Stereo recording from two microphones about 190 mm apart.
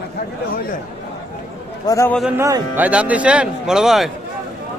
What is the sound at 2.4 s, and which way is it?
Speech, 15° right (ahead or behind).